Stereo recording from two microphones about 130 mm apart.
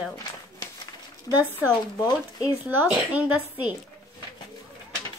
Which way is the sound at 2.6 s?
10° right (ahead or behind).